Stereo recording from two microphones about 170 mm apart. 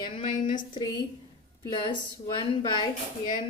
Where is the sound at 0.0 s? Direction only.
30° left (ahead or behind).